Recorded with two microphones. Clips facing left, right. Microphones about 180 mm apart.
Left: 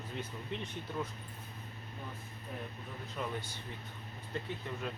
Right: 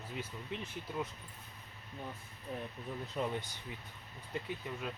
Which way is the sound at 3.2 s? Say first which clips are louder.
Right 3 dB; 25° right (ahead or behind).